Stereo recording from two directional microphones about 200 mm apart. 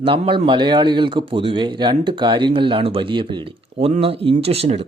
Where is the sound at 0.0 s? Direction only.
25° right (ahead or behind).